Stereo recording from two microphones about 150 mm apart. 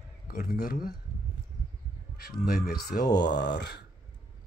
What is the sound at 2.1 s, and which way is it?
Speech, 90° left.